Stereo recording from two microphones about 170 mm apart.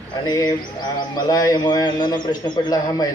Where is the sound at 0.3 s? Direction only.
25° left (ahead or behind).